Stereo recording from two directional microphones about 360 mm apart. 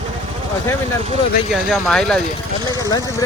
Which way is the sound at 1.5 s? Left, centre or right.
Centre.